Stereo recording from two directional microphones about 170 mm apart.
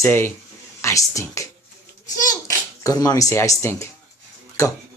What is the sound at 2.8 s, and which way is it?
A man's voice, 20° left (ahead or behind).